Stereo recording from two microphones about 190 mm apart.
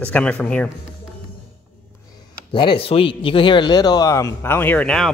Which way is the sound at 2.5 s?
25° left (ahead or behind).